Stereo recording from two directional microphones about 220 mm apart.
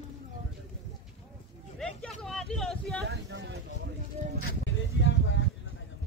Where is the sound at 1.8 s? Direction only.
Centre (ahead or behind).